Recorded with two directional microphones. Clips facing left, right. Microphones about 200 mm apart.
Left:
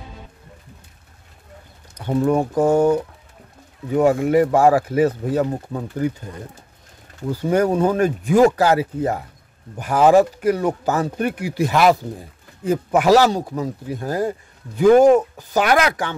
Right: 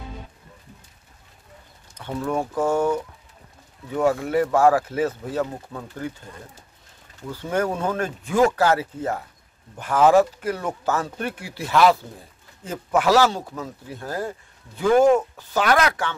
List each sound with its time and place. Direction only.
2.0 s speech: 35° left (ahead or behind)
2.3 s speech: 15° left (ahead or behind)
2.7 s speech: 35° left (ahead or behind)
3.9 s speech: 15° left (ahead or behind)
7.3 s speech: 15° left (ahead or behind)